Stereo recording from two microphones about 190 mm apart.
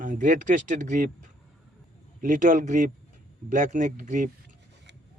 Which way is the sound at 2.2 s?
45° right (ahead or behind).